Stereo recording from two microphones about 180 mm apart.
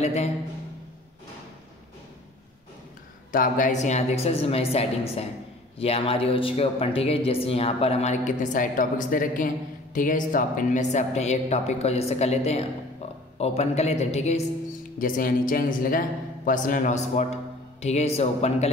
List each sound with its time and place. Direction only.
0.0 s a man's voice: 35° left (ahead or behind)
3.3 s speech: 50° left (ahead or behind)
15.0 s a man's voice: 50° left (ahead or behind)